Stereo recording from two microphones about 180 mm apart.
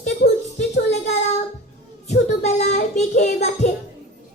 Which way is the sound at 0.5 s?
40° left (ahead or behind).